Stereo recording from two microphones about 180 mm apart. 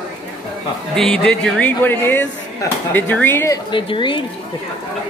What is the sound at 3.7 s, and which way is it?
Speech, 25° left (ahead or behind).